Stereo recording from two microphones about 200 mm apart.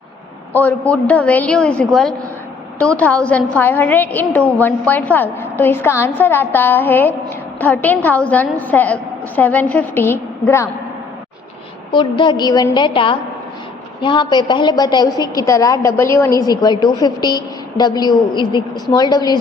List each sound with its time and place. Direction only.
0.5 s a woman's voice: 10° left (ahead or behind)
11.9 s a woman's voice: 25° left (ahead or behind)